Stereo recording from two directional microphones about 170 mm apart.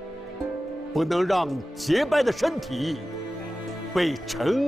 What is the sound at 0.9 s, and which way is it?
Speech, centre (ahead or behind).